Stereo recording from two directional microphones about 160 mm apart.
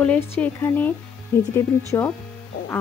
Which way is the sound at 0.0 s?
10° left (ahead or behind).